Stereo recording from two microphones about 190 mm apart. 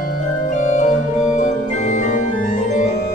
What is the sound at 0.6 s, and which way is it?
Organ, 40° left (ahead or behind).